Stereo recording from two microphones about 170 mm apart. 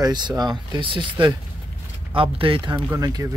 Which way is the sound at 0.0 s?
25° right (ahead or behind).